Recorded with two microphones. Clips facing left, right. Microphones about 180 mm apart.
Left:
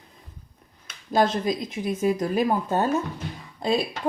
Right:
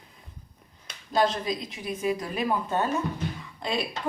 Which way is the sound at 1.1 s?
45° left (ahead or behind).